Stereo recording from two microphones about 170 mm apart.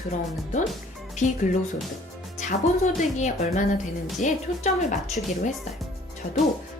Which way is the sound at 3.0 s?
45° left (ahead or behind).